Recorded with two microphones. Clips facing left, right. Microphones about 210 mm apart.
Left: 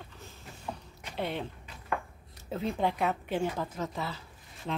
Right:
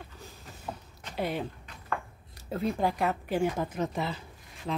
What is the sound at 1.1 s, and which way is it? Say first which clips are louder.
Speech: right 2 dB; 5° right (ahead or behind).